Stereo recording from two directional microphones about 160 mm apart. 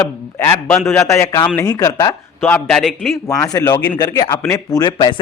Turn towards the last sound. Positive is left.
turn(degrees=30)  # may be behind; listen again after turning